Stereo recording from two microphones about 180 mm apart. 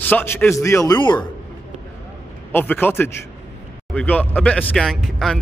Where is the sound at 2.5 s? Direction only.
10° left (ahead or behind).